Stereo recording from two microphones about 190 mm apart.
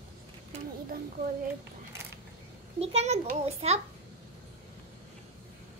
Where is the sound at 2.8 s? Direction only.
35° right (ahead or behind).